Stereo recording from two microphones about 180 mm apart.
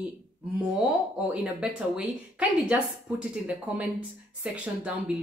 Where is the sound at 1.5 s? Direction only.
5° right (ahead or behind).